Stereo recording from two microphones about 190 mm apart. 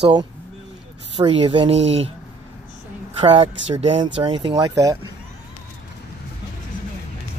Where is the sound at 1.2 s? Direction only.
30° right (ahead or behind).